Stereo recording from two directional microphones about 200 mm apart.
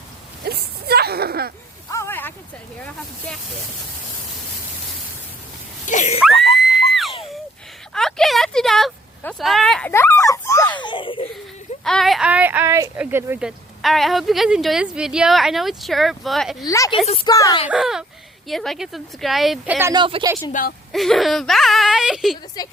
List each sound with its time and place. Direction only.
0.4 s a sound: 50° right (ahead or behind)
1.9 s a sound: 15° left (ahead or behind)
5.8 s screaming: 40° left (ahead or behind)
6.4 s screaming: centre (ahead or behind)
7.9 s a child's voice: centre (ahead or behind); by 11.3 s 25° left (ahead or behind)
11.8 s speech: centre (ahead or behind)
13.8 s speech: centre (ahead or behind)
16.6 s a woman's voice: 15° left (ahead or behind)
17.7 s speech: centre (ahead or behind)
19.9 s speech: 25° right (ahead or behind)
20.5 s a woman's voice: 45° left (ahead or behind)
20.9 s speech: centre (ahead or behind)
22.6 s a woman's voice: 20° left (ahead or behind)